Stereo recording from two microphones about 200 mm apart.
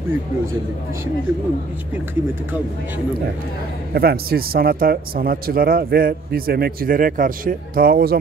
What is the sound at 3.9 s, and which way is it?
Speech, 50° right (ahead or behind).